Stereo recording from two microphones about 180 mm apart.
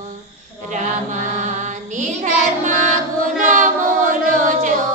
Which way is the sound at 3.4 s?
45° right (ahead or behind).